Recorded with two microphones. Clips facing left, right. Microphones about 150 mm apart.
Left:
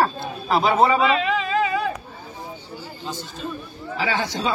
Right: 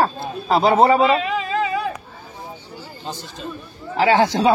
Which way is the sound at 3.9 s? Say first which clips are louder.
Right 9 dB; 70° right (ahead or behind).